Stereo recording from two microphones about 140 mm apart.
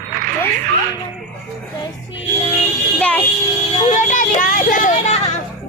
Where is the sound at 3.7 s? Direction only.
55° left (ahead or behind).